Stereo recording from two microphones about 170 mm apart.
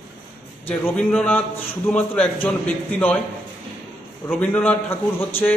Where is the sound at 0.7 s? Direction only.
10° left (ahead or behind).